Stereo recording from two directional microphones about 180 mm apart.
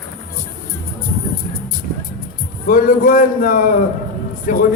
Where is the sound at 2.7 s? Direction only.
50° left (ahead or behind).